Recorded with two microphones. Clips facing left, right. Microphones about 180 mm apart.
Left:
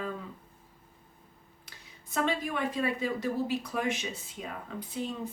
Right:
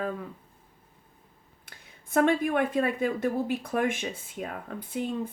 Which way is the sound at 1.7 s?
55° right (ahead or behind).